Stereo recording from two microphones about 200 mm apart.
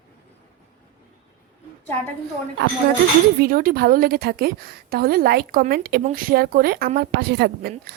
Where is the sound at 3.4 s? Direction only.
45° right (ahead or behind).